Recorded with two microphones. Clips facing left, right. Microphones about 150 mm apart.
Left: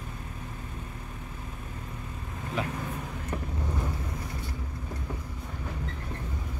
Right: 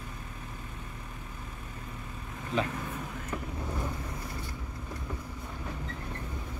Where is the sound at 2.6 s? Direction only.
5° left (ahead or behind).